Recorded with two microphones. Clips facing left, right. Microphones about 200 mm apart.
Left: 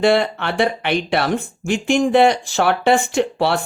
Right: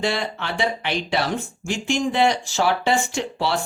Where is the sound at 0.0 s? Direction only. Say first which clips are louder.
Left 9 dB; 60° left (ahead or behind).